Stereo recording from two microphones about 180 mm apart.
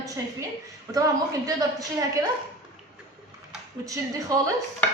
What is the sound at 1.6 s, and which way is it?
Speech, 20° right (ahead or behind).